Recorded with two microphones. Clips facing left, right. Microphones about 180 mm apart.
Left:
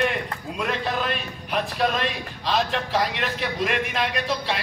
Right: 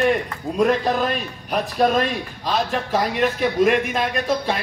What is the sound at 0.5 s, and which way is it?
A man's voice, 40° right (ahead or behind).